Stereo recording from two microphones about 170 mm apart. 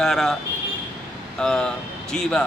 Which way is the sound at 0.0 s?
5° left (ahead or behind).